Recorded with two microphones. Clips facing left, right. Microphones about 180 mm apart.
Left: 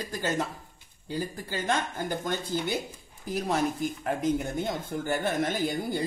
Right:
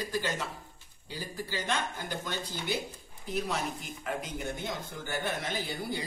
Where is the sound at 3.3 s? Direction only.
45° left (ahead or behind).